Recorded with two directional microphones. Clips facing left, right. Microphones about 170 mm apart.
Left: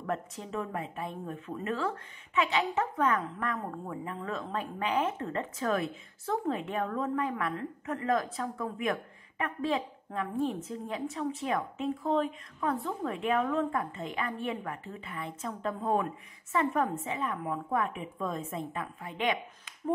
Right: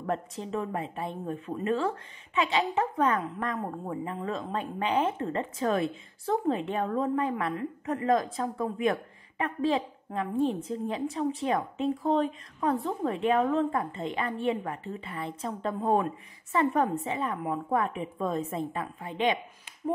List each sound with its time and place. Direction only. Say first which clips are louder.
0.0 s a woman's voice: right 3 dB; 30° right (ahead or behind)